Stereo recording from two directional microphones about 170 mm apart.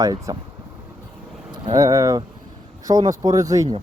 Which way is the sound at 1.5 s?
25° right (ahead or behind).